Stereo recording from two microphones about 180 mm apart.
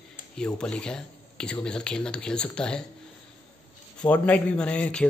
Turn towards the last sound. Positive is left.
turn(degrees=5)  # may be behind; listen again after turning